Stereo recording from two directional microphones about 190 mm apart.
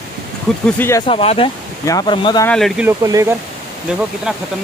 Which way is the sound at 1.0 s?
30° left (ahead or behind).